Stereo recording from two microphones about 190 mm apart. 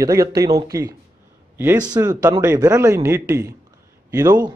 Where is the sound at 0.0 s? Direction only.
15° right (ahead or behind).